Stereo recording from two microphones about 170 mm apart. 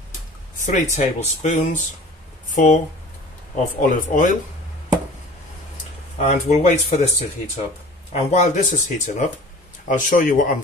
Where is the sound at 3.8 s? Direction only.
50° left (ahead or behind).